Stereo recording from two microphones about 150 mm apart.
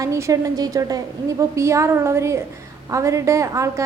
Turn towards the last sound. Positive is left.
turn(degrees=-20)  # may be behind; listen again after turning